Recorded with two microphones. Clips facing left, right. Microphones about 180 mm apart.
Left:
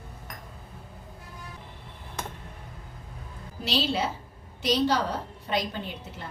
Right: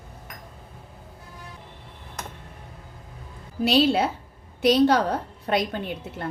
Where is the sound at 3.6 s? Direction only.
55° right (ahead or behind).